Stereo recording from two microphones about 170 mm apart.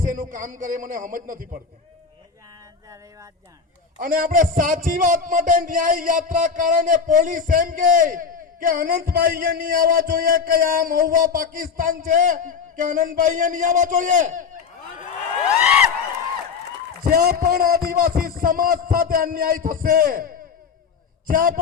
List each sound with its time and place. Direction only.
0.0 s a man's voice: 50° right (ahead or behind)
3.9 s a man's voice: 55° right (ahead or behind)
15.4 s a sound: 5° right (ahead or behind)
17.0 s a man's voice: 65° right (ahead or behind)